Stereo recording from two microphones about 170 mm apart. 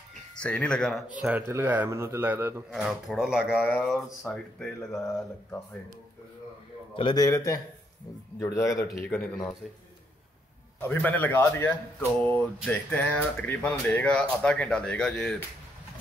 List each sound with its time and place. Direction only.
0.4 s speech: 5° left (ahead or behind)
1.1 s a man's voice: 10° right (ahead or behind)
2.7 s speech: centre (ahead or behind)
7.0 s speech: 25° left (ahead or behind)
8.8 s speech: centre (ahead or behind)
10.8 s speech: 10° left (ahead or behind)